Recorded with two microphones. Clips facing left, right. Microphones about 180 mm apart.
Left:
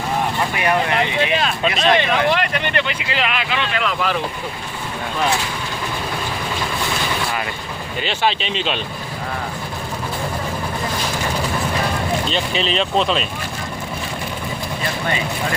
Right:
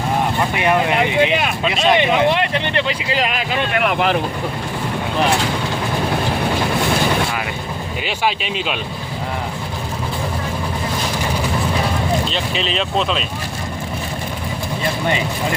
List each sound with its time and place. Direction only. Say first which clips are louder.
0.5 s speech: right 2 dB; 20° right (ahead or behind); by 4.2 s 55° right (ahead or behind)
8.0 s speech: left 1 dB; 10° right (ahead or behind)
12.3 s speech: left 1 dB; centre (ahead or behind)
15.0 s speech: right 2 dB; 20° right (ahead or behind)